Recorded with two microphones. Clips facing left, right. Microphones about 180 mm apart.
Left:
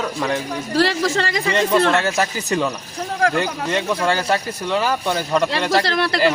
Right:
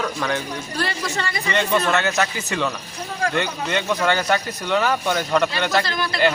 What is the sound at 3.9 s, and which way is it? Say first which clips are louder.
Speech: right 1 dB; 5° left (ahead or behind).